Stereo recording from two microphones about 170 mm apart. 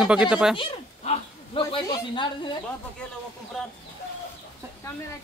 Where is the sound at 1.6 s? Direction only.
20° left (ahead or behind).